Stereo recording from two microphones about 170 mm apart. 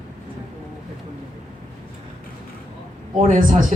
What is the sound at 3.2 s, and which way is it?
Speech, 50° right (ahead or behind).